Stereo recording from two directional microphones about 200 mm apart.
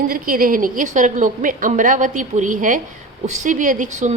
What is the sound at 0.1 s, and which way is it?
A woman's voice, 45° right (ahead or behind).